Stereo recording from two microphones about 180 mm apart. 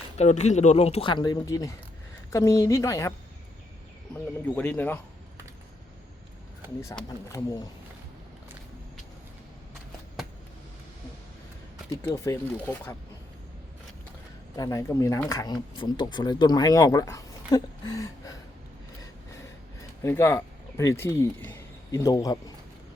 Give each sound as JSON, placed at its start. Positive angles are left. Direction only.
{"t": 0.2, "sound": "speech", "side_deg": 40}
{"t": 4.1, "sound": "speech", "side_deg": 10}
{"t": 7.3, "sound": "speech", "side_deg": 20}
{"t": 12.0, "sound": "speech", "side_deg": 15}
{"t": 14.5, "sound": "speech", "side_deg": 20}
{"t": 20.0, "sound": "speech", "side_deg": 15}